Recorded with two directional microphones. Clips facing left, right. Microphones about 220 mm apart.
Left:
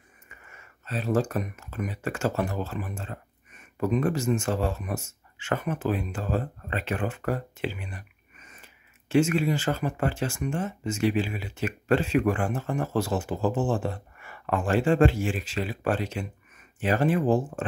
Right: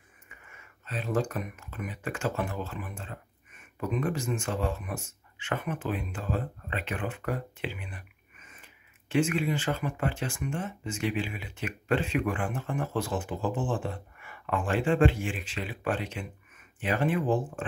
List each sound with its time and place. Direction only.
0.5 s speech: 40° left (ahead or behind)
9.1 s speech: 40° left (ahead or behind)